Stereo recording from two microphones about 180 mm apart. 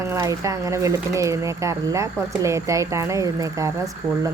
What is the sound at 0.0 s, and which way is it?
Speech, 15° right (ahead or behind).